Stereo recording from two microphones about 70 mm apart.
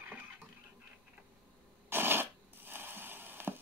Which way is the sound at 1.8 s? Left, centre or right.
Right.